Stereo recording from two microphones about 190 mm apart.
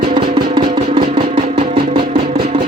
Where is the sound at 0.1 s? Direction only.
25° right (ahead or behind).